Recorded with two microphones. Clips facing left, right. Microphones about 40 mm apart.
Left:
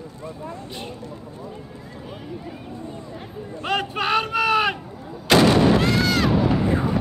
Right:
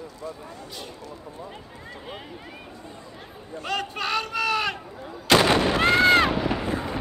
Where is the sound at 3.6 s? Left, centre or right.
Left.